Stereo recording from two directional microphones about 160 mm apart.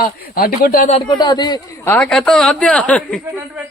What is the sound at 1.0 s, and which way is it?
Speech, 25° left (ahead or behind).